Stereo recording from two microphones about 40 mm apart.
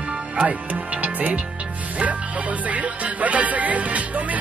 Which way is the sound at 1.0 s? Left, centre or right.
Right.